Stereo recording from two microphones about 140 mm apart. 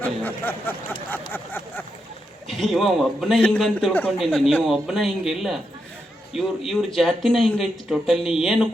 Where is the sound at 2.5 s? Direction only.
Centre (ahead or behind).